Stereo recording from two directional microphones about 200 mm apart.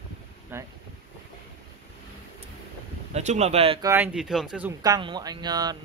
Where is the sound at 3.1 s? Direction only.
35° right (ahead or behind).